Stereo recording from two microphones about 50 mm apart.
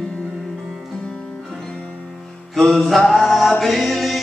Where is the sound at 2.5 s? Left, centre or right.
Centre.